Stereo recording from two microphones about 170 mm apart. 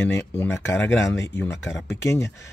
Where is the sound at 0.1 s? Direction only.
15° left (ahead or behind).